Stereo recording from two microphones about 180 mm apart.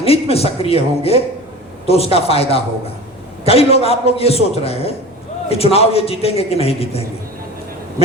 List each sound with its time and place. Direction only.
0.0 s a man's voice: 35° left (ahead or behind)